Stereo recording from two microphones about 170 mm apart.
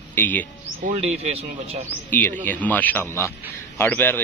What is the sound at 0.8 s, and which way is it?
Speech, 40° right (ahead or behind).